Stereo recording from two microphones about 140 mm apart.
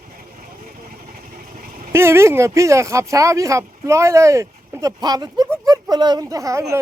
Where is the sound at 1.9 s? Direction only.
20° right (ahead or behind).